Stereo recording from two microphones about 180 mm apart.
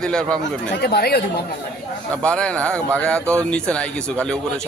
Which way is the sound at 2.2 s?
5° left (ahead or behind).